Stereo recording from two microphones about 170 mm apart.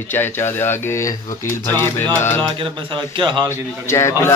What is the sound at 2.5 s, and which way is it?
Speech, 30° right (ahead or behind).